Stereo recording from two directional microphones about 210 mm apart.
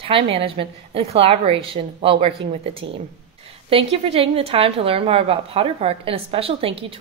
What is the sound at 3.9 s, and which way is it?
A woman's voice, 25° right (ahead or behind).